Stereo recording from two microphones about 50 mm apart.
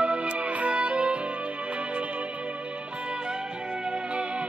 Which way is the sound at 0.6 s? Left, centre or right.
Right.